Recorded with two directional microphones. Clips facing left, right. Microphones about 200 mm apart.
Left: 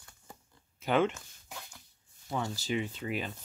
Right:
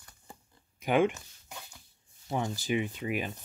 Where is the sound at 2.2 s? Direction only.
20° right (ahead or behind).